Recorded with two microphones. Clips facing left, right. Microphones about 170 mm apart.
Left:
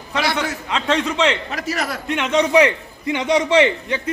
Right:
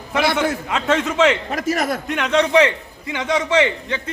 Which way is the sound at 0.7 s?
5° right (ahead or behind).